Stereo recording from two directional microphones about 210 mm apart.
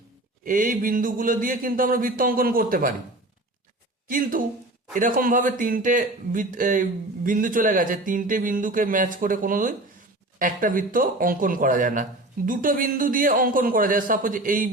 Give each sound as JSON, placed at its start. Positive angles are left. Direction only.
{"t": 0.4, "sound": "speech", "side_deg": -40}
{"t": 4.1, "sound": "speech", "side_deg": -40}